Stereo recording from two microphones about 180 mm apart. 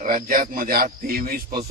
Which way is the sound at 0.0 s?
50° right (ahead or behind).